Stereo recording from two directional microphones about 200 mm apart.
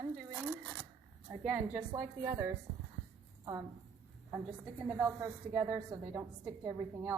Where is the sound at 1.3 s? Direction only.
10° right (ahead or behind).